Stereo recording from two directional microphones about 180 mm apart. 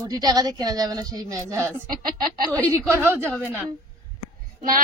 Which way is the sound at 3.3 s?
5° right (ahead or behind).